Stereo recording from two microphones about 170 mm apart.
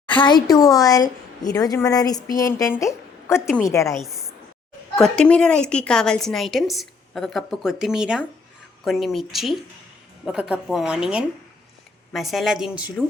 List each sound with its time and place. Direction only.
0.2 s a woman's voice: 25° left (ahead or behind)
3.9 s a woman's voice: centre (ahead or behind)